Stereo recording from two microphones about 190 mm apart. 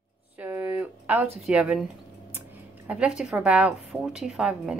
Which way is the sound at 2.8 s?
5° right (ahead or behind).